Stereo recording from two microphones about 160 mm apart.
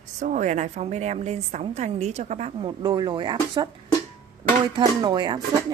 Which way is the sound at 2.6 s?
25° right (ahead or behind).